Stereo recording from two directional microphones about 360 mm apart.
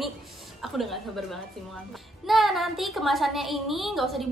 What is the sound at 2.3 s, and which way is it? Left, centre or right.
A woman's voice, centre.